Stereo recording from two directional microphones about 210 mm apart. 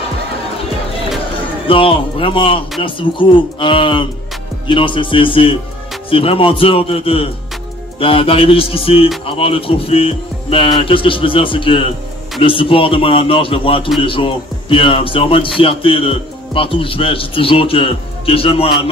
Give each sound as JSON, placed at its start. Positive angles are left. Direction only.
{"t": 1.7, "sound": "speech", "side_deg": 25}